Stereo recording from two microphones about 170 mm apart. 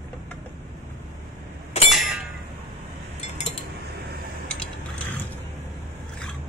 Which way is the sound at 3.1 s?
40° left (ahead or behind).